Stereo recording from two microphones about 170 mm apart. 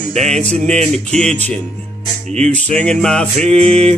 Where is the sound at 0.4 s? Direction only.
5° left (ahead or behind).